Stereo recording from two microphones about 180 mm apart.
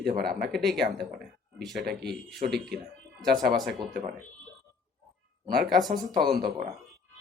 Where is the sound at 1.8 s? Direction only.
65° right (ahead or behind).